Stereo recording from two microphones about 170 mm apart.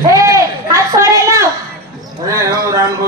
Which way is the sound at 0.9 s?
15° right (ahead or behind).